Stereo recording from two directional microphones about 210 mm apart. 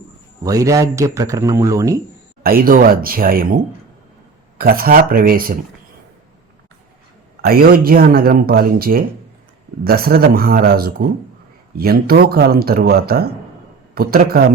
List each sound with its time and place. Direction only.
0.4 s a man's voice: 15° right (ahead or behind)
2.4 s speech: 45° right (ahead or behind)
7.4 s speech: 45° right (ahead or behind)